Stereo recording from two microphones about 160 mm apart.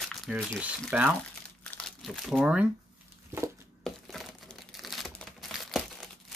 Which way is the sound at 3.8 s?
Centre (ahead or behind).